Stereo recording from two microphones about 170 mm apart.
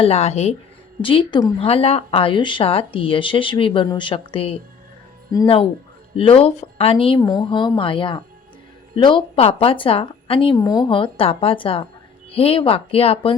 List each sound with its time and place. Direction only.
0.0 s a woman's voice: 35° left (ahead or behind)
6.1 s a woman's voice: 35° left (ahead or behind)